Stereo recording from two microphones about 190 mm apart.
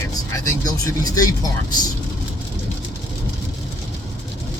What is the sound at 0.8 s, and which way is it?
Speech, 20° left (ahead or behind).